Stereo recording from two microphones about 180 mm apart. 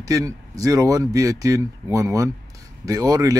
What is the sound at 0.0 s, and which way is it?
Speech, 20° right (ahead or behind).